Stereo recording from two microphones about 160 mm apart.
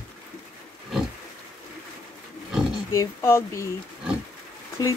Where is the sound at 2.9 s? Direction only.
15° left (ahead or behind).